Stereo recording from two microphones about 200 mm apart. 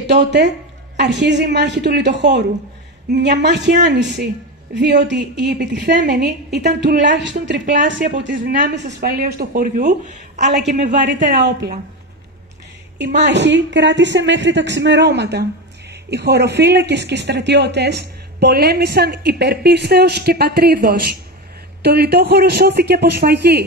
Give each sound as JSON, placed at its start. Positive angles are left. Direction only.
{"t": 0.0, "sound": "a man's voice", "side_deg": -60}
{"t": 12.9, "sound": "a man's voice", "side_deg": -60}